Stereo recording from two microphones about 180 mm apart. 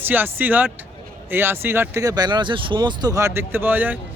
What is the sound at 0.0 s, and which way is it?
A man's voice, 10° right (ahead or behind).